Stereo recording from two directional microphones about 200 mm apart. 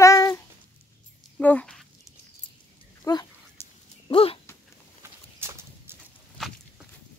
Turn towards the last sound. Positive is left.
turn(degrees=0)  # may be behind; listen again after turning